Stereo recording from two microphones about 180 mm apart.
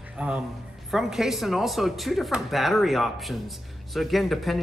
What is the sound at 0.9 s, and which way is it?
Speech, centre (ahead or behind).